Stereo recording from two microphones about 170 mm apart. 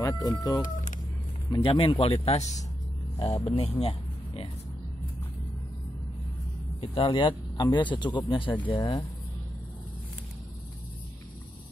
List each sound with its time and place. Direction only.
0.0 s speech: 20° left (ahead or behind); by 2.4 s 35° left (ahead or behind)
3.4 s speech: 35° left (ahead or behind)
3.8 s a sound: 35° left (ahead or behind)
6.8 s speech: 30° left (ahead or behind)